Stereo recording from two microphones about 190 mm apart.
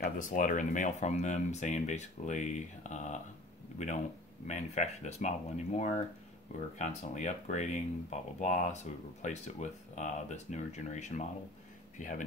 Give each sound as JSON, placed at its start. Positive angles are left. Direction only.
{"t": 0.0, "sound": "speech", "side_deg": 45}